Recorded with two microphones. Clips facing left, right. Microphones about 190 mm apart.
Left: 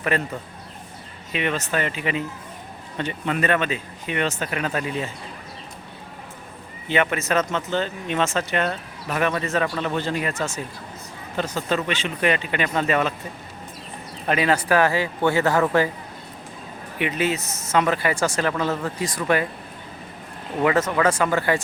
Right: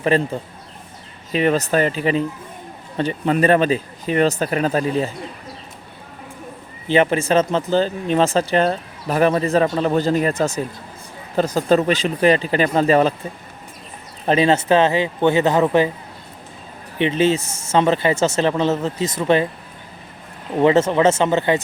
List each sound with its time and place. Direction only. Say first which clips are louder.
0.1 s speech: right 7 dB; 30° right (ahead or behind)
1.3 s speech: right 7 dB; 35° right (ahead or behind)
6.8 s speech: right 6 dB; 30° right (ahead or behind)
14.3 s speech: right 5 dB; 25° right (ahead or behind)
17.0 s speech: right 6 dB; 25° right (ahead or behind)
20.6 s speech: right 6 dB; 25° right (ahead or behind)